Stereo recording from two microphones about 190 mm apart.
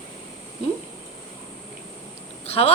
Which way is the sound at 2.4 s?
35° left (ahead or behind).